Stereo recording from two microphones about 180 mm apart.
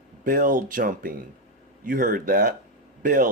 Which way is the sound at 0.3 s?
50° right (ahead or behind).